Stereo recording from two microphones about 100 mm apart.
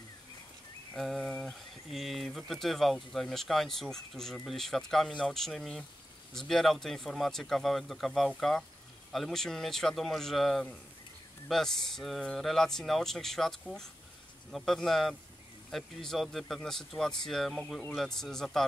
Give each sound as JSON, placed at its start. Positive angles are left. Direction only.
{"t": 0.9, "sound": "speech", "side_deg": 0}